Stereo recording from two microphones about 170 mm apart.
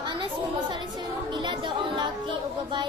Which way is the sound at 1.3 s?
25° right (ahead or behind).